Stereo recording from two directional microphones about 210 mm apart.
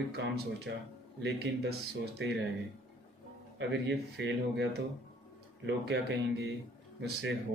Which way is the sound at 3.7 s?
55° right (ahead or behind).